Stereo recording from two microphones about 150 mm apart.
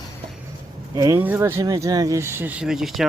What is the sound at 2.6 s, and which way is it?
Speech, 5° right (ahead or behind).